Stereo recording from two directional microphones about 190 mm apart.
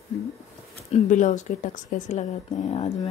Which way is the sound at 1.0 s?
40° left (ahead or behind).